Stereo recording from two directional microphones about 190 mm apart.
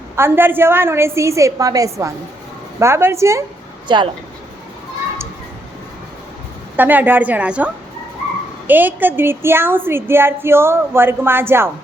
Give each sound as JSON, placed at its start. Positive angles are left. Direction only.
{"t": 0.2, "sound": "a woman's voice", "side_deg": -10}
{"t": 6.7, "sound": "a woman's voice", "side_deg": -10}